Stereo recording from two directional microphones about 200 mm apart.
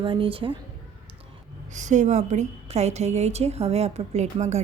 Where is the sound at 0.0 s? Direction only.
25° right (ahead or behind).